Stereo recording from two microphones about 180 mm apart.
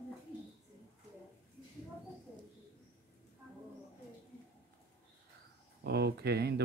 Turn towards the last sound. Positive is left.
turn(degrees=-65)  # may be behind; listen again after turning